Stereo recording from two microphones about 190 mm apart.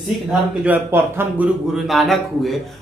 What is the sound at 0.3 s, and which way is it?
A man's voice, 10° right (ahead or behind).